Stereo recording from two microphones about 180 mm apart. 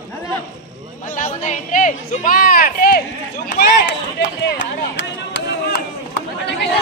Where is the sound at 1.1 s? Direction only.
45° left (ahead or behind).